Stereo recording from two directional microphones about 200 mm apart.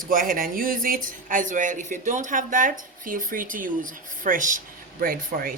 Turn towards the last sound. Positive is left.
turn(degrees=-45)  # may be behind; listen again after turning